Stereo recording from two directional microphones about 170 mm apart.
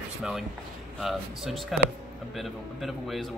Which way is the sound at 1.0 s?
Centre (ahead or behind).